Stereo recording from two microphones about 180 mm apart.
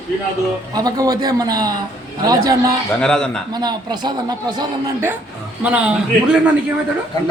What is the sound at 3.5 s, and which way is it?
Speech, 25° right (ahead or behind).